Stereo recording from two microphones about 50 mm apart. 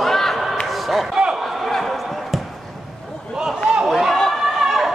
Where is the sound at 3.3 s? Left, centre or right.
Centre.